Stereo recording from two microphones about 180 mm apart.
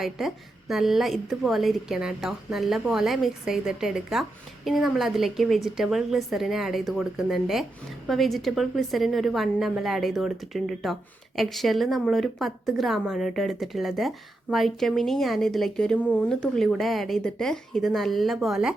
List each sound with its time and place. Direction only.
0.0 s a woman's voice: centre (ahead or behind)